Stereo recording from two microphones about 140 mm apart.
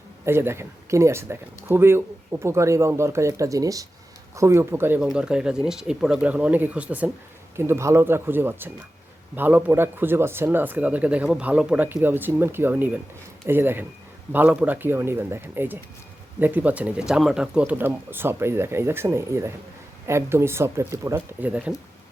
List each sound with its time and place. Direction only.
0.3 s speech: 20° right (ahead or behind)